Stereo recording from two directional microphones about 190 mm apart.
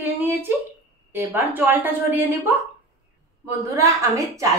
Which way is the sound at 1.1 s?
10° right (ahead or behind).